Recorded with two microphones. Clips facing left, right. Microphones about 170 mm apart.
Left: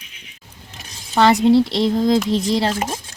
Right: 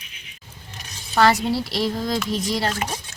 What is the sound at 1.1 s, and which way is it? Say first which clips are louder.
Speech: left 6 dB; 20° left (ahead or behind).